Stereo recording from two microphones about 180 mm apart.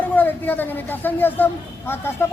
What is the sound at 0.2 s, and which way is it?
Speech, 10° left (ahead or behind).